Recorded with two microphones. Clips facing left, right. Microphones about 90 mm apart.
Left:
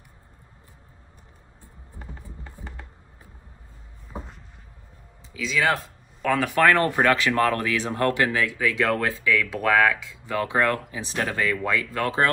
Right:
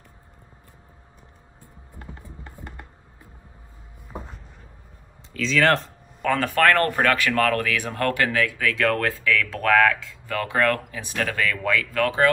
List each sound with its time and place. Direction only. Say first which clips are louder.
2.4 s music: right 2 dB; 10° right (ahead or behind)
5.3 s speech: right 4 dB; 10° left (ahead or behind); by 12.3 s 25° left (ahead or behind)